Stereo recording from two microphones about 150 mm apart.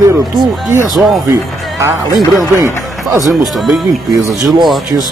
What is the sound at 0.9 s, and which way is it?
Speech, centre (ahead or behind).